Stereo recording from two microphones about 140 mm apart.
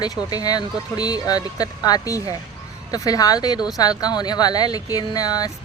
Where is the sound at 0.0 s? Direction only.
25° left (ahead or behind).